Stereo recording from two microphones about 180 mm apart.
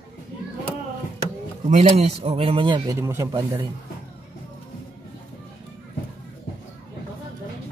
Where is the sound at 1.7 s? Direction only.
35° right (ahead or behind); by 3.6 s 20° right (ahead or behind).